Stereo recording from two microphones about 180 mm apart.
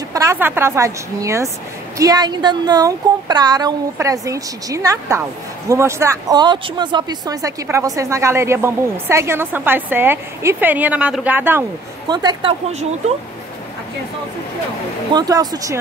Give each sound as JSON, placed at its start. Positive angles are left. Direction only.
{"t": 0.1, "sound": "speech", "side_deg": -15}
{"t": 12.1, "sound": "speech", "side_deg": -25}
{"t": 15.1, "sound": "speech", "side_deg": -20}